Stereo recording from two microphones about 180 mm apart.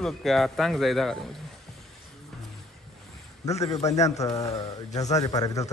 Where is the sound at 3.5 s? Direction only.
35° left (ahead or behind).